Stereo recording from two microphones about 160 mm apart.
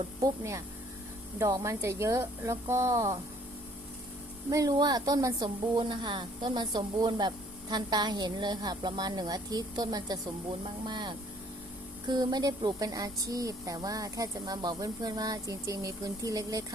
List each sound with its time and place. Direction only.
0.2 s a woman's voice: 20° right (ahead or behind)
4.4 s a woman's voice: 20° right (ahead or behind)